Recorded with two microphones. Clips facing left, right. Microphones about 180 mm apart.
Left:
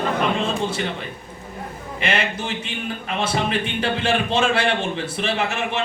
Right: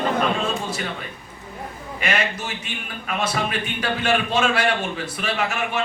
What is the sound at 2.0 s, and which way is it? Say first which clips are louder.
A man's voice: left 1 dB; 25° left (ahead or behind).